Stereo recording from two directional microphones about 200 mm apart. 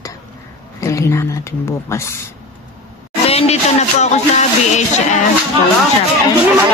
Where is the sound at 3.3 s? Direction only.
30° left (ahead or behind).